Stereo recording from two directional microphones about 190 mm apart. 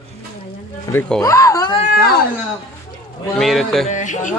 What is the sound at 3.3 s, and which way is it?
Speech, centre (ahead or behind).